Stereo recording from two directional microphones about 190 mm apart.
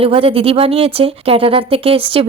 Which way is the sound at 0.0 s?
30° right (ahead or behind).